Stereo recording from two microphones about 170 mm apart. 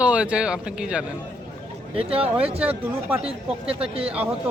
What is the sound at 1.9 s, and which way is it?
Speech, 35° right (ahead or behind).